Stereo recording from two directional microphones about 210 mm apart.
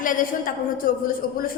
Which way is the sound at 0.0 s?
40° left (ahead or behind).